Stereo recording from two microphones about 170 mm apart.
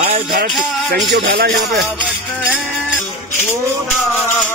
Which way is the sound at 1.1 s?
70° right (ahead or behind).